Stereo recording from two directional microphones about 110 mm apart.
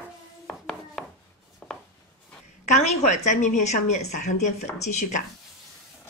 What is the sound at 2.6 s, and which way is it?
A woman's voice, 90° left.